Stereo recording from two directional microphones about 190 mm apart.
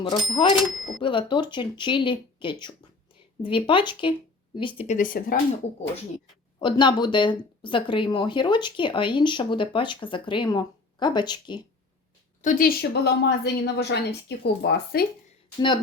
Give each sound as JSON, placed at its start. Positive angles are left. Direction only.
{"t": 0.3, "sound": "speech", "side_deg": 25}
{"t": 4.9, "sound": "speech", "side_deg": 45}
{"t": 6.6, "sound": "speech", "side_deg": 25}
{"t": 12.4, "sound": "a woman's voice", "side_deg": 45}
{"t": 15.5, "sound": "speech", "side_deg": 25}